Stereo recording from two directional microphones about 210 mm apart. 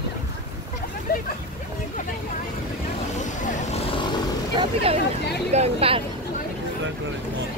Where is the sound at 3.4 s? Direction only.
30° left (ahead or behind).